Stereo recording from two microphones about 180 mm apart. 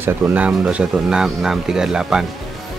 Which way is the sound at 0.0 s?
10° right (ahead or behind).